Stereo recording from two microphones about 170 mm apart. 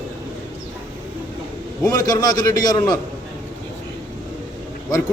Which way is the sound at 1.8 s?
20° left (ahead or behind).